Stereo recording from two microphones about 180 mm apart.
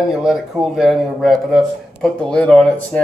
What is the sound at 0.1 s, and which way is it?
A woman's voice, 5° right (ahead or behind).